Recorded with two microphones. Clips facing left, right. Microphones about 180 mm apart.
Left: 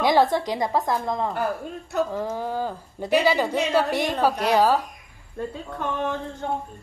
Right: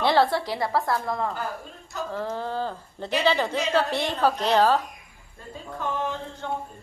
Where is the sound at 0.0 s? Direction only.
15° left (ahead or behind).